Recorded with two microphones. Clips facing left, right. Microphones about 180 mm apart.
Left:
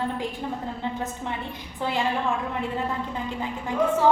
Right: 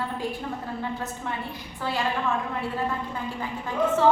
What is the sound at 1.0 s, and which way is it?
Speech, 20° left (ahead or behind).